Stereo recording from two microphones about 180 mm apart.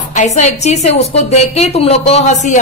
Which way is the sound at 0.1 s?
40° left (ahead or behind).